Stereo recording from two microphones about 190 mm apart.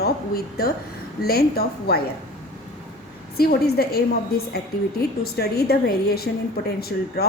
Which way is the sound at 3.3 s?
55° left (ahead or behind).